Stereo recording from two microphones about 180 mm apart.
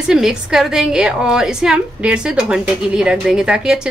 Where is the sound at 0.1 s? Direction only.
5° right (ahead or behind).